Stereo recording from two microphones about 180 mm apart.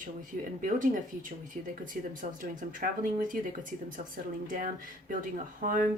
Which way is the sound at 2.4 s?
50° right (ahead or behind).